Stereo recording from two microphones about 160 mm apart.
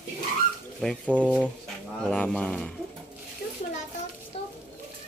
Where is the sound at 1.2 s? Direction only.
5° right (ahead or behind).